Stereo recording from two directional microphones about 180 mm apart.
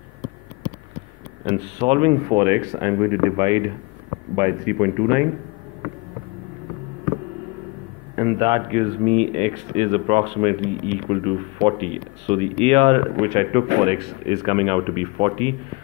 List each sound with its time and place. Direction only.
1.4 s speech: 30° right (ahead or behind)
2.2 s speech: 15° right (ahead or behind)
3.4 s speech: 25° right (ahead or behind)
4.4 s speech: 10° right (ahead or behind)
8.4 s speech: 25° right (ahead or behind)